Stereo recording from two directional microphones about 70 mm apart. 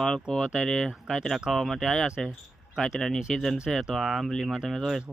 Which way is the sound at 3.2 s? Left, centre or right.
Centre.